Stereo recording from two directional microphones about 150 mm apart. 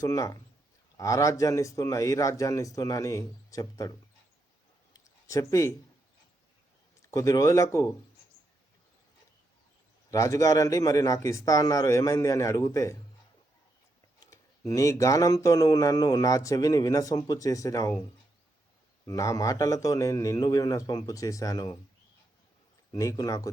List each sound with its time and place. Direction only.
0.0 s speech: 20° left (ahead or behind)
4.9 s a sound: 20° left (ahead or behind)
7.1 s speech: 20° left (ahead or behind)
10.1 s speech: 20° left (ahead or behind)
14.3 s speech: 20° left (ahead or behind)
19.0 s speech: 20° left (ahead or behind)
22.9 s speech: 25° left (ahead or behind)